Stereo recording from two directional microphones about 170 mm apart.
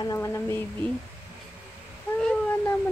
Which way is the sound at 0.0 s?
20° left (ahead or behind).